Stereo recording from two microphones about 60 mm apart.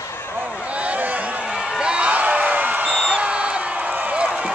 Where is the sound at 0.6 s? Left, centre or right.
Right.